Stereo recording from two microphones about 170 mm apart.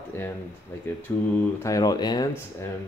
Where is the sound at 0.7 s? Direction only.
15° left (ahead or behind).